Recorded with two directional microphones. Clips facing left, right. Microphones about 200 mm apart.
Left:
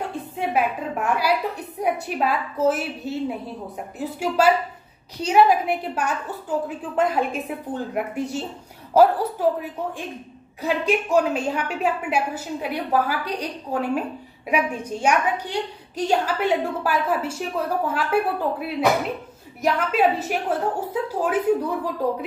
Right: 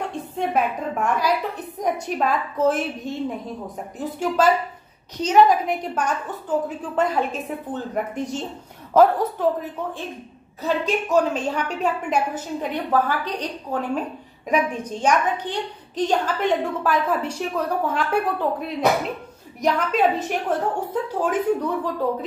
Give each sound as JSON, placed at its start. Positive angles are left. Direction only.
{"t": 0.1, "sound": "a woman's voice", "side_deg": 5}